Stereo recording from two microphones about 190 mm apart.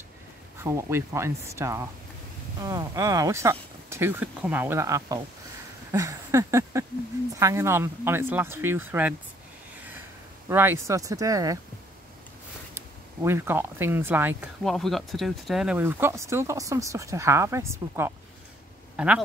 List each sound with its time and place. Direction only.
0.6 s speech: 15° right (ahead or behind)
5.9 s a sound: 15° right (ahead or behind)
7.3 s speech: 15° right (ahead or behind)
10.5 s speech: 10° right (ahead or behind)
12.7 s speech: 15° right (ahead or behind)
14.6 s speech: centre (ahead or behind)